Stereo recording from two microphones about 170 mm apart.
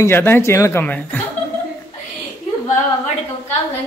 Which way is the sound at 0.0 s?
15° left (ahead or behind).